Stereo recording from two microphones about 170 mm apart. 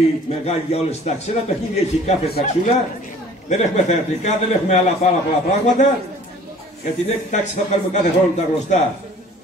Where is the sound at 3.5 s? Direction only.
45° left (ahead or behind).